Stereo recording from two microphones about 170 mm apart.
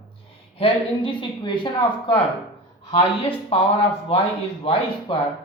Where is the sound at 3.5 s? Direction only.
35° left (ahead or behind).